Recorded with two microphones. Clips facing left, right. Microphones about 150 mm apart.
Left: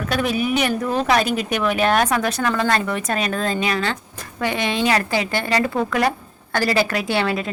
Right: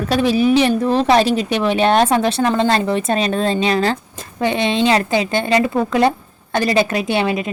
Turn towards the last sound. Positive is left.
turn(degrees=-20)  # may be behind; listen again after turning